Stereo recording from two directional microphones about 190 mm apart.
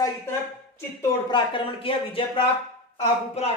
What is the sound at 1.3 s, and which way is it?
Speech, 25° left (ahead or behind).